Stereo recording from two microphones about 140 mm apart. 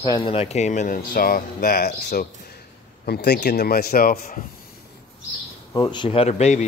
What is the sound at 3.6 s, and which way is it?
Speech, 90° left.